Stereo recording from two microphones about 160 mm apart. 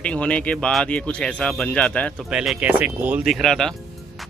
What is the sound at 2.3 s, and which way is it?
Speech, 5° right (ahead or behind).